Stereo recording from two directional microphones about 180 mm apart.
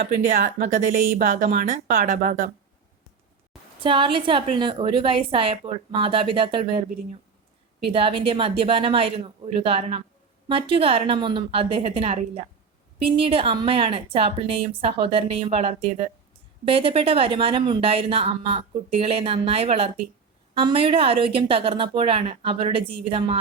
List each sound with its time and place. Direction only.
0.0 s speech: 45° right (ahead or behind)
3.8 s a woman's voice: 30° right (ahead or behind)